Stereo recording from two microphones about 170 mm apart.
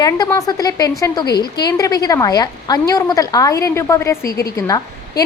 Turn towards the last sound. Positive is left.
turn(degrees=20)  # may be behind; listen again after turning